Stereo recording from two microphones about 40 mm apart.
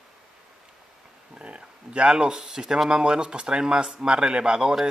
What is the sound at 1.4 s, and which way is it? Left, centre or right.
Speech, right.